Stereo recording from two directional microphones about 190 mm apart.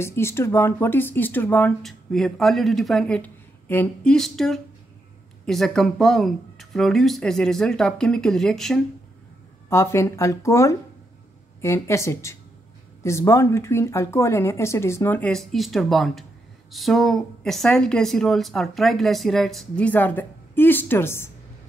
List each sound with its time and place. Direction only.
0.0 s speech: 15° left (ahead or behind)
9.7 s speech: 15° left (ahead or behind)